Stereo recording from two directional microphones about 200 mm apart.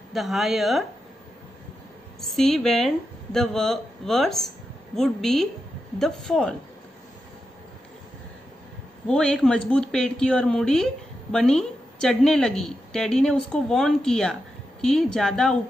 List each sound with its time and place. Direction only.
0.1 s a woman's voice: centre (ahead or behind)
2.2 s a woman's voice: centre (ahead or behind)
9.0 s a woman's voice: 5° left (ahead or behind)